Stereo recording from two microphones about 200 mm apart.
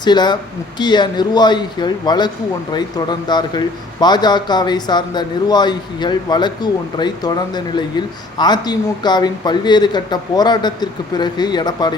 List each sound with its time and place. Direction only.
0.0 s speech: 20° left (ahead or behind)